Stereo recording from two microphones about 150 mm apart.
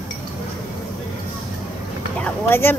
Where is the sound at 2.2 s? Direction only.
15° left (ahead or behind).